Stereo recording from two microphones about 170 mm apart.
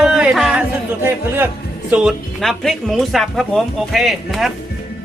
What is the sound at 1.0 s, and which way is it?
Speech, 15° right (ahead or behind).